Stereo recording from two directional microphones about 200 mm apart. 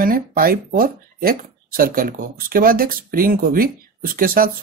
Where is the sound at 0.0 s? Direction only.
45° right (ahead or behind).